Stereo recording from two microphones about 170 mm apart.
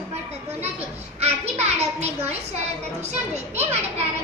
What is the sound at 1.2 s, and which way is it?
A child's voice, 40° right (ahead or behind).